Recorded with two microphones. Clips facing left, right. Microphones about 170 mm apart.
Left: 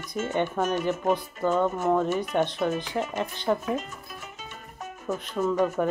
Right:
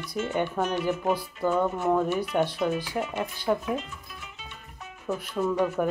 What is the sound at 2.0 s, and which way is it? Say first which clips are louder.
Speech: even; 45° left (ahead or behind).